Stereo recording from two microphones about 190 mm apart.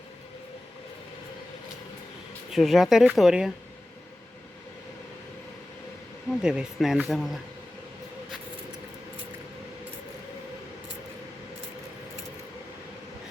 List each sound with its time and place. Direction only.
2.5 s speech: centre (ahead or behind)
6.4 s speech: 5° right (ahead or behind)